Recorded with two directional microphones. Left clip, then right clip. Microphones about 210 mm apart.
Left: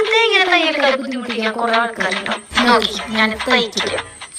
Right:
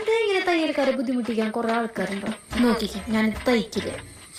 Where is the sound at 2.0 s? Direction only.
45° left (ahead or behind).